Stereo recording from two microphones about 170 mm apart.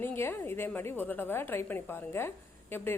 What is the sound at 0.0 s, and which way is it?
A woman's voice, 15° left (ahead or behind).